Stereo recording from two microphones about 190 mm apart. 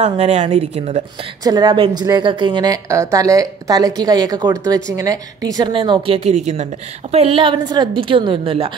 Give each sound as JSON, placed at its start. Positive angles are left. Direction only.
{"t": 0.0, "sound": "speech", "side_deg": -35}
{"t": 1.4, "sound": "a woman's voice", "side_deg": -20}